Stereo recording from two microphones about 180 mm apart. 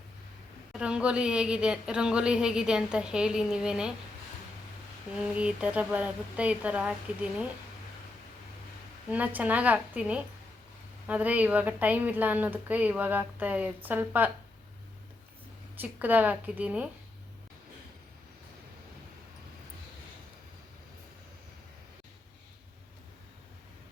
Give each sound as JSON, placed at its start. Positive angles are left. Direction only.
{"t": 0.7, "sound": "a woman's voice", "side_deg": -5}
{"t": 5.3, "sound": "a woman's voice", "side_deg": -5}
{"t": 9.0, "sound": "a woman's voice", "side_deg": -10}
{"t": 15.8, "sound": "a woman's voice", "side_deg": -10}